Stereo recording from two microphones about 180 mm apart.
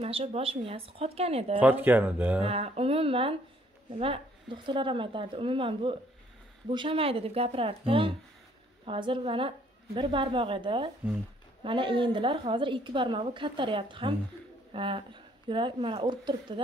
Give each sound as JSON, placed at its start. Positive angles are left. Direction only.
{"t": 0.0, "sound": "speech", "side_deg": -35}
{"t": 1.6, "sound": "speech", "side_deg": -10}
{"t": 2.4, "sound": "a woman's voice", "side_deg": -35}